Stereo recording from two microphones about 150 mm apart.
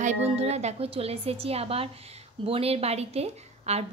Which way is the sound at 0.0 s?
50° right (ahead or behind).